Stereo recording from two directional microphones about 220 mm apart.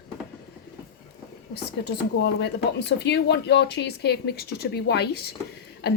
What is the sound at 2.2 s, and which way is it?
Speech, 50° left (ahead or behind).